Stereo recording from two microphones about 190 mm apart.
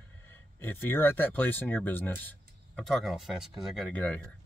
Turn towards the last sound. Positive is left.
turn(degrees=10)  # may be behind; listen again after turning